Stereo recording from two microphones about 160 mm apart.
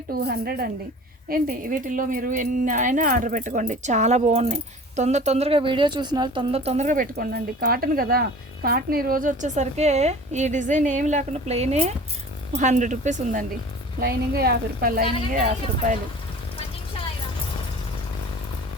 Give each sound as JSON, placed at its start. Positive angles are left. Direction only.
{"t": 0.1, "sound": "a woman's voice", "side_deg": -75}
{"t": 1.3, "sound": "speech", "side_deg": -60}
{"t": 14.0, "sound": "a woman's voice", "side_deg": -75}